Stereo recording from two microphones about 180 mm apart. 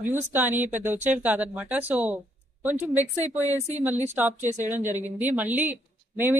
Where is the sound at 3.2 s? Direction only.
10° right (ahead or behind).